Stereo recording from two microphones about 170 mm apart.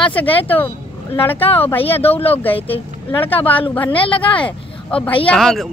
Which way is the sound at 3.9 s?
30° left (ahead or behind).